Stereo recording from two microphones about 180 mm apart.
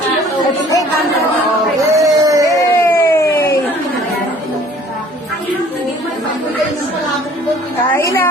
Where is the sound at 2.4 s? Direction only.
15° left (ahead or behind).